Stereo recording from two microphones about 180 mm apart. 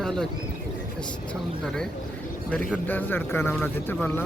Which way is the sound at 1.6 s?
5° left (ahead or behind).